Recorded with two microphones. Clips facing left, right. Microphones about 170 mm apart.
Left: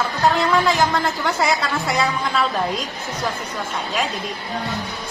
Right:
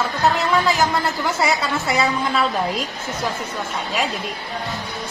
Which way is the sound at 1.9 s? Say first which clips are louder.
Right 2 dB; 5° right (ahead or behind).